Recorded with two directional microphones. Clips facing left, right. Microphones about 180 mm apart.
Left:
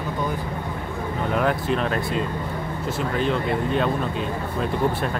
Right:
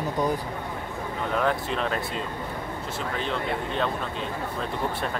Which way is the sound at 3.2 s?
5° left (ahead or behind).